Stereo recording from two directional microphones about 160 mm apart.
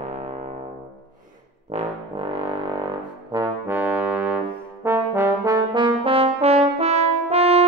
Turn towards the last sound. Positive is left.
turn(degrees=-40)  # may be behind; listen again after turning